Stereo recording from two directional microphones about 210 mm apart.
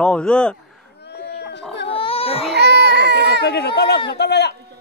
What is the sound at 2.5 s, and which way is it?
Baby cry, 50° right (ahead or behind).